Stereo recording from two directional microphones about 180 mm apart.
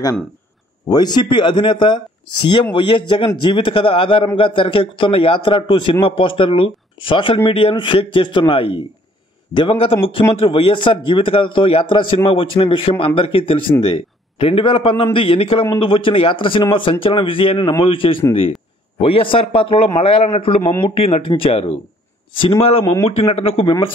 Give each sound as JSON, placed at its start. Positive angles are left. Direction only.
{"t": 0.8, "sound": "a man's voice", "side_deg": 20}